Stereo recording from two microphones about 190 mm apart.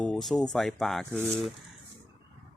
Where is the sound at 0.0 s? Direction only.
5° left (ahead or behind).